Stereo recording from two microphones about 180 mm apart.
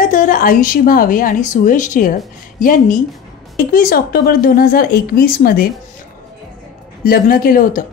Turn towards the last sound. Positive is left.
turn(degrees=50)  # may be behind; listen again after turning